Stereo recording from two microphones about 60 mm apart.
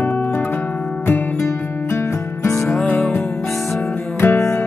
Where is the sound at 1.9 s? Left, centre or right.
Left.